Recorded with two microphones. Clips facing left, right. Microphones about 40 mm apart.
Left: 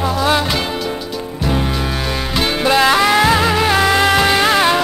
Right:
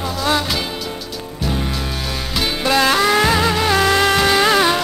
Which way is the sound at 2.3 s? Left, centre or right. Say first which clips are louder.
Left 3 dB; centre.